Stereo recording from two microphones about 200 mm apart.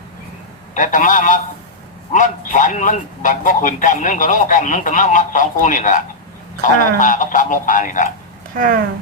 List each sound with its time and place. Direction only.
0.7 s a man's voice: 40° left (ahead or behind)
8.5 s speech: 45° right (ahead or behind)